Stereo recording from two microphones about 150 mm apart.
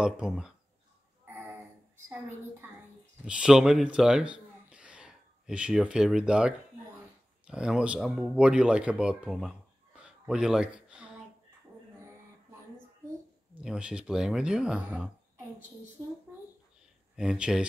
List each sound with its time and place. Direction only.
0.0 s speech: 5° right (ahead or behind)
3.3 s speech: 5° right (ahead or behind)
12.0 s a sound: 15° right (ahead or behind)
13.6 s speech: 5° right (ahead or behind)
17.1 s speech: 5° right (ahead or behind)